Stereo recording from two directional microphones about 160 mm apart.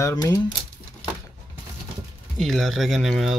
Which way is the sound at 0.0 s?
25° left (ahead or behind).